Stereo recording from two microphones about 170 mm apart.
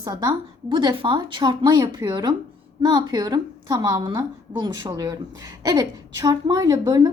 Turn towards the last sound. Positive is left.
turn(degrees=-25)  # may be behind; listen again after turning